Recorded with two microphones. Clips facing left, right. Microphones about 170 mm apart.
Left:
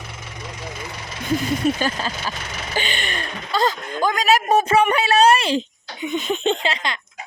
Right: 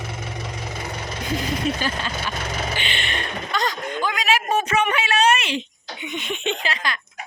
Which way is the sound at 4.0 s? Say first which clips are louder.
Left 5 dB; 45° left (ahead or behind).